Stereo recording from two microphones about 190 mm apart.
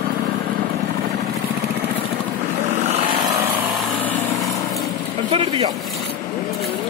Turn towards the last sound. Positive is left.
turn(degrees=-25)  # may be behind; listen again after turning